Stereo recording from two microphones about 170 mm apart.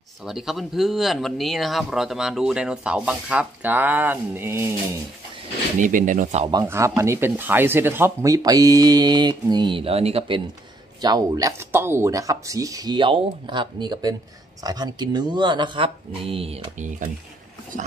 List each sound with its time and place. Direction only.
0.2 s speech: centre (ahead or behind)
5.8 s speech: 50° right (ahead or behind)
6.6 s speech: 15° right (ahead or behind); by 16.9 s 35° right (ahead or behind)